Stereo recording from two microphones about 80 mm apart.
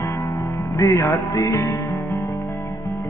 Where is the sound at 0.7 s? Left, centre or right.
Left.